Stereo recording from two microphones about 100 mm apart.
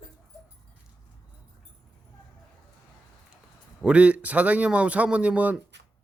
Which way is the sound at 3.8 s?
15° right (ahead or behind).